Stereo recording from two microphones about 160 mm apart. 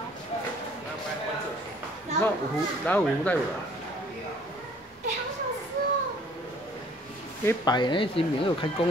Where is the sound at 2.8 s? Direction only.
10° left (ahead or behind).